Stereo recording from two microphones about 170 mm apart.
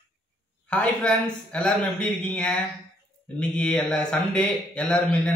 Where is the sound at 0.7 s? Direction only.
5° left (ahead or behind).